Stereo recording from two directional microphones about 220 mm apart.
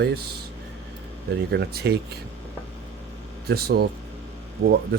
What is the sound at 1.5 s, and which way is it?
Speech, 50° right (ahead or behind).